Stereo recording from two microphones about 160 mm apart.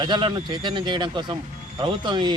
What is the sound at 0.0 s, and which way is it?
A man's voice, 30° right (ahead or behind).